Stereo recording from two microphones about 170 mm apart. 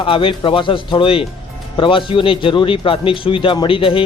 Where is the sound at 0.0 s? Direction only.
30° left (ahead or behind).